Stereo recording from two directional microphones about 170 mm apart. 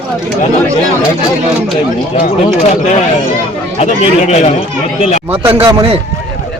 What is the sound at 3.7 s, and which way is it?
Speech, 40° left (ahead or behind).